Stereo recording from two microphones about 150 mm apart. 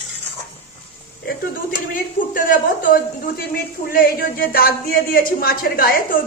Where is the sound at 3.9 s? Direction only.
80° left.